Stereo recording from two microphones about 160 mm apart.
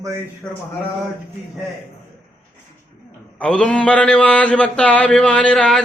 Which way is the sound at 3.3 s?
5° left (ahead or behind).